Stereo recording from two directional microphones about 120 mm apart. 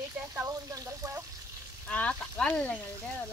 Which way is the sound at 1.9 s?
10° left (ahead or behind).